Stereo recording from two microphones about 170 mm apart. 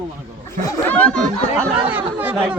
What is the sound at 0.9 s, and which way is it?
Speech, 5° left (ahead or behind).